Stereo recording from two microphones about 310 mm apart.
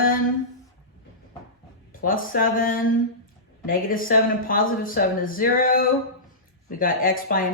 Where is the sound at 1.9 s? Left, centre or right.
Left.